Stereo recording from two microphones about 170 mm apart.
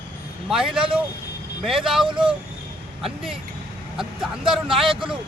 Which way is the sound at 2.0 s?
30° right (ahead or behind).